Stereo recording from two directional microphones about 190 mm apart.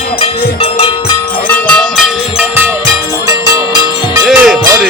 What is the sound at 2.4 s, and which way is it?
Music, 10° right (ahead or behind).